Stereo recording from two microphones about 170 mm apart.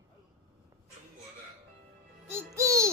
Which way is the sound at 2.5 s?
15° right (ahead or behind).